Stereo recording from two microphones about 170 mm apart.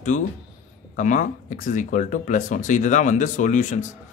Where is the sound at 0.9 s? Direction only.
50° left (ahead or behind).